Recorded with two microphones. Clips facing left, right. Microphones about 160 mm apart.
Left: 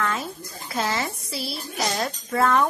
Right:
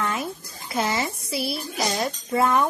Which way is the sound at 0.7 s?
15° right (ahead or behind).